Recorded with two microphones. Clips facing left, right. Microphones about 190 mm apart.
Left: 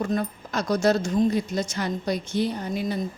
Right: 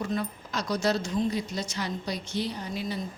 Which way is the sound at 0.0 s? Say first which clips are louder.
Left 5 dB; 45° left (ahead or behind).